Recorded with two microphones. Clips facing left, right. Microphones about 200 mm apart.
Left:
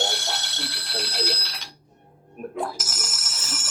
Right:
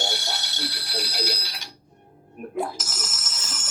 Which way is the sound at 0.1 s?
90° left.